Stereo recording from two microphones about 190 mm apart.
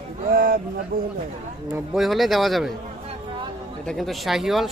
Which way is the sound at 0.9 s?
50° right (ahead or behind).